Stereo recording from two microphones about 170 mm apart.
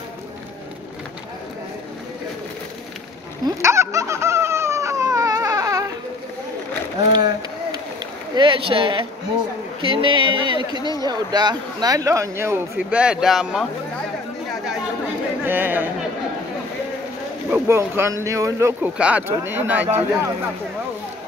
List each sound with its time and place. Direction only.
3.4 s a sound: 15° right (ahead or behind)
8.4 s speech: 30° right (ahead or behind); by 13.7 s centre (ahead or behind)
14.5 s chatter: centre (ahead or behind)
15.4 s speech: 10° right (ahead or behind)
17.5 s speech: 15° right (ahead or behind)